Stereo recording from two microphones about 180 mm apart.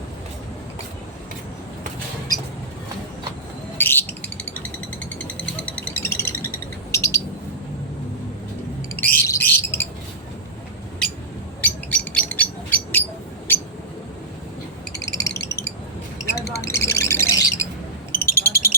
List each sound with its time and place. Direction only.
3.8 s bird: 10° left (ahead or behind)
5.0 s music: 10° left (ahead or behind)
6.9 s bird: 15° left (ahead or behind)
9.1 s bird: 15° left (ahead or behind)
11.6 s bird: 5° left (ahead or behind)
13.5 s a sound: 10° left (ahead or behind)
14.9 s a sound: 20° left (ahead or behind)
16.2 s bird: 15° left (ahead or behind)
18.1 s a sound: 10° left (ahead or behind)